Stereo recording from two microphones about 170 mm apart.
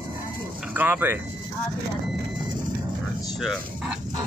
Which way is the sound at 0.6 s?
10° right (ahead or behind).